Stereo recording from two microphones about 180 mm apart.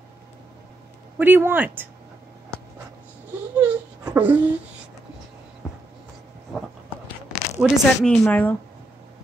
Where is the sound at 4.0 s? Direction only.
10° right (ahead or behind).